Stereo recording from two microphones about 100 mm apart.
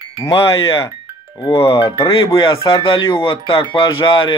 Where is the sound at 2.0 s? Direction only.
60° left (ahead or behind).